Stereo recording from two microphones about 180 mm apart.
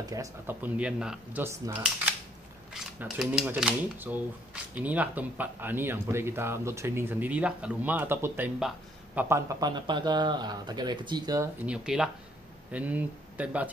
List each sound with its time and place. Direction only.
0.0 s speech: 20° right (ahead or behind)
2.7 s a man's voice: 5° right (ahead or behind)
11.6 s speech: 5° right (ahead or behind)